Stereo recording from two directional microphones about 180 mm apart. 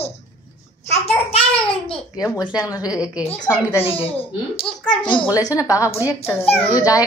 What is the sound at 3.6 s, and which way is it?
Speech, 15° left (ahead or behind).